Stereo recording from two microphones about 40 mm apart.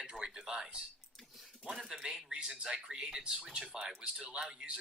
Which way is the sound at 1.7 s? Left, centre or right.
Centre.